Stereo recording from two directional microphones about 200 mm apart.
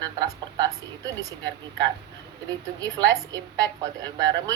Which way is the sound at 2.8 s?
20° right (ahead or behind).